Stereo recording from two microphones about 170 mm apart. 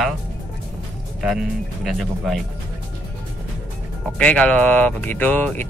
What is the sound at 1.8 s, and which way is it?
Speech, centre (ahead or behind).